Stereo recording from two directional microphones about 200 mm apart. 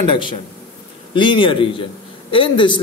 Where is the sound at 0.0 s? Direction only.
25° left (ahead or behind).